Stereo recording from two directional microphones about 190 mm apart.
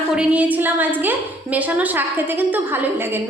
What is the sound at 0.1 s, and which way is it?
A woman's voice, 5° right (ahead or behind).